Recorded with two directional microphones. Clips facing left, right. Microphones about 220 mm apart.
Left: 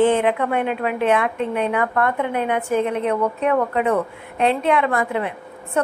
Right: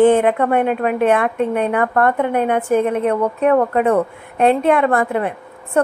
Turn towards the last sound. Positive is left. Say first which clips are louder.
# right 5 dB
turn(degrees=-50)  # may be behind; listen again after turning